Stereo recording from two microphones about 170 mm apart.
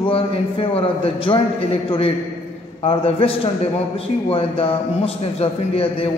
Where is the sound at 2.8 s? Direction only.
35° left (ahead or behind).